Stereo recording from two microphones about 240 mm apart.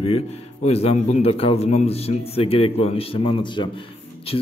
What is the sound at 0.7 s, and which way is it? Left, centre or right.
A man's voice, left.